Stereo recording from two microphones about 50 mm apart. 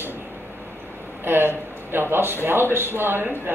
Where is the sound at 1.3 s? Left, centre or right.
Right.